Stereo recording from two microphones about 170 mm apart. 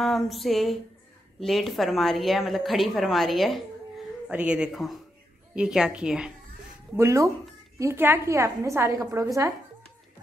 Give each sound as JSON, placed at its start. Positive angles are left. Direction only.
{"t": 0.0, "sound": "a woman's voice", "side_deg": 0}
{"t": 7.0, "sound": "a woman's voice", "side_deg": -15}